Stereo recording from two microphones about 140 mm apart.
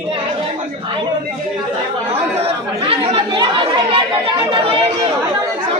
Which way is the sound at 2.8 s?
40° right (ahead or behind).